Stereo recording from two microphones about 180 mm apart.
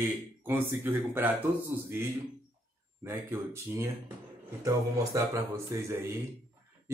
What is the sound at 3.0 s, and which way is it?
Speech, 15° right (ahead or behind).